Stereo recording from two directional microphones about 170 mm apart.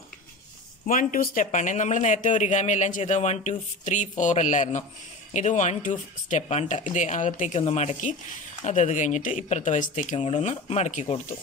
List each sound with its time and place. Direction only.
0.8 s speech: 55° left (ahead or behind)